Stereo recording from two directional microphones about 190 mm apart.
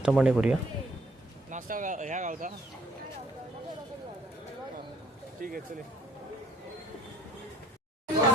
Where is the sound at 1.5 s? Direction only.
45° right (ahead or behind).